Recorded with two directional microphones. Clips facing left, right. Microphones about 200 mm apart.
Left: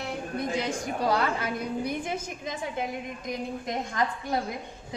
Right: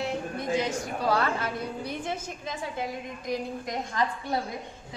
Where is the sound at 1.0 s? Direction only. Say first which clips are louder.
Even; 15° left (ahead or behind).